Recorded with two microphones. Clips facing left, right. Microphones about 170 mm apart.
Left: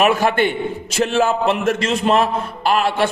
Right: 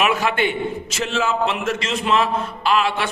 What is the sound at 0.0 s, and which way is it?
A man's voice, 45° left (ahead or behind).